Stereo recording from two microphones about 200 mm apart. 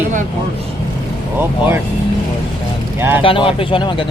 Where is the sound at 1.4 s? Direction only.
10° right (ahead or behind).